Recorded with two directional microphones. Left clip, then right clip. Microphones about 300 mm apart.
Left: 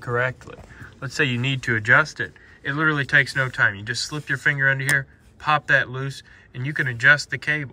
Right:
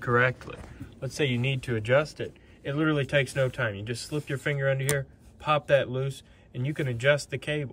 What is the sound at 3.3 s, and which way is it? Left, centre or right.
Speech, centre.